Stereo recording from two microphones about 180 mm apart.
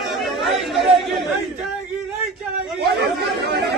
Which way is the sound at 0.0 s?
Centre (ahead or behind).